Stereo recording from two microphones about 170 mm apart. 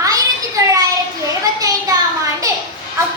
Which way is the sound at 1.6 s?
20° right (ahead or behind).